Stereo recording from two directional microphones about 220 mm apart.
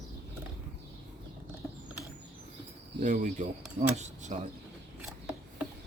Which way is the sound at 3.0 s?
35° right (ahead or behind).